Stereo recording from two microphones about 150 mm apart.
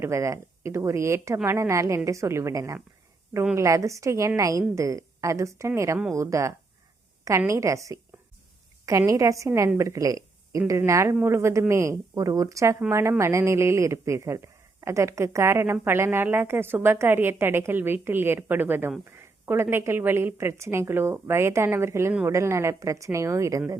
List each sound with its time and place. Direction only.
0.0 s a woman's voice: 20° right (ahead or behind)